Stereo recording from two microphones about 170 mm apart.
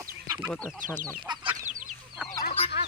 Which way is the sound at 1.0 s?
25° right (ahead or behind).